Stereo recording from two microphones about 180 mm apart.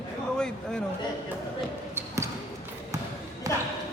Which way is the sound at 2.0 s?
15° right (ahead or behind).